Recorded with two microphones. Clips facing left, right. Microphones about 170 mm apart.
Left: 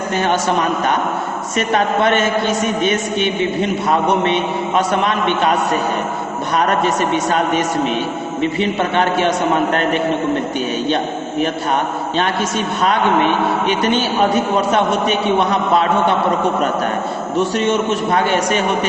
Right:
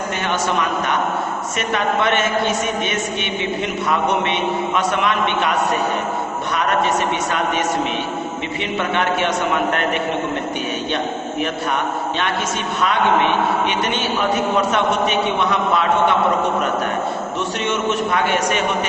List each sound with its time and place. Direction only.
1.5 s a man's voice: 35° left (ahead or behind)
8.4 s a man's voice: 35° left (ahead or behind)
12.1 s a man's voice: 35° left (ahead or behind)
17.6 s a man's voice: 35° left (ahead or behind)